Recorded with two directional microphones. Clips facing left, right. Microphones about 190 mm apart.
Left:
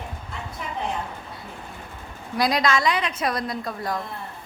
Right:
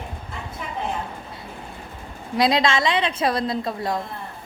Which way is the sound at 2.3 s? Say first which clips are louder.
Right 2 dB; 25° right (ahead or behind).